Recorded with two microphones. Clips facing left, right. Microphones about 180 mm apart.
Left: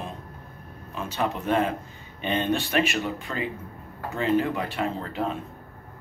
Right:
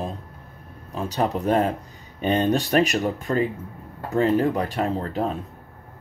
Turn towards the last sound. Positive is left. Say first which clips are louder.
# right 4 dB
turn(degrees=-40)  # may be behind; listen again after turning